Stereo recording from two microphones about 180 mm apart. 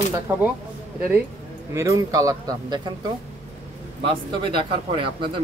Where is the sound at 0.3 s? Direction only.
15° right (ahead or behind).